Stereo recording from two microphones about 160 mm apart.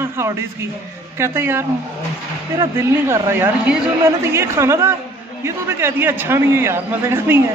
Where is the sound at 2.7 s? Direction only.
15° right (ahead or behind).